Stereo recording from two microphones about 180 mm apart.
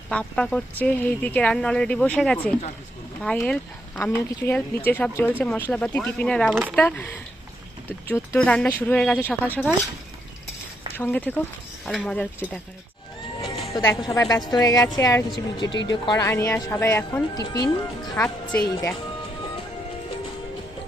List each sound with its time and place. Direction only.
0.1 s speech: 5° left (ahead or behind)
10.9 s speech: 10° left (ahead or behind)
13.4 s horse: centre (ahead or behind)
13.8 s speech: 20° left (ahead or behind)